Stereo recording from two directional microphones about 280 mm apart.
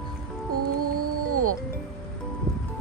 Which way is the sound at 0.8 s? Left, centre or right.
Right.